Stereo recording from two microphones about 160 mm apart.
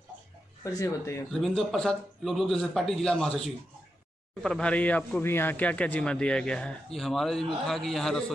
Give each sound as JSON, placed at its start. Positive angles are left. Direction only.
{"t": 0.7, "sound": "speech", "side_deg": 20}
{"t": 1.3, "sound": "a man's voice", "side_deg": 0}